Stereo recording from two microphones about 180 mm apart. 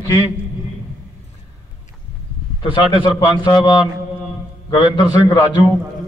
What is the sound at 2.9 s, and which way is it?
A man's voice, 25° left (ahead or behind).